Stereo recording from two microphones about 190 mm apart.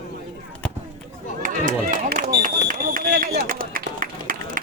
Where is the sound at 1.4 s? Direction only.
40° right (ahead or behind).